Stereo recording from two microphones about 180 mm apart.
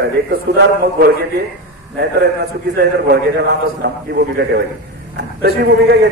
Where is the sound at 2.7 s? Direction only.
65° right (ahead or behind).